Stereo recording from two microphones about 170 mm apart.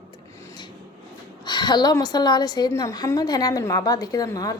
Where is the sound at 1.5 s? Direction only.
25° left (ahead or behind).